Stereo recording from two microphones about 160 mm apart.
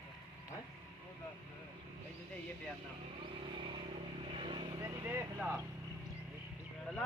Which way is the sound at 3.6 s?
30° right (ahead or behind).